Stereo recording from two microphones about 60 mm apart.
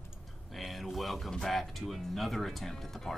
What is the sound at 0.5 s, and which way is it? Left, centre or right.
Speech, centre.